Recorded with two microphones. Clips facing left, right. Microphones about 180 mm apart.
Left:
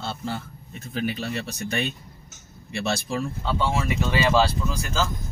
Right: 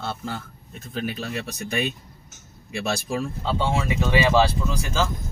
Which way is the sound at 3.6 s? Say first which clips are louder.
Even; 20° right (ahead or behind).